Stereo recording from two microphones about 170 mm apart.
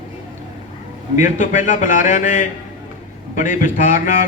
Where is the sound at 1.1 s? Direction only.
50° left (ahead or behind).